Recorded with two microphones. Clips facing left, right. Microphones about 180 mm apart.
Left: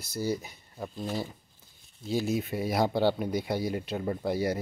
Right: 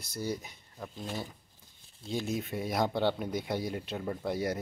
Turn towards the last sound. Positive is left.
turn(degrees=5)  # may be behind; listen again after turning